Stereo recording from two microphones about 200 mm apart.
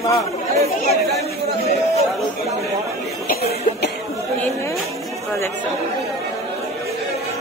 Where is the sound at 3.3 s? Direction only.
50° left (ahead or behind).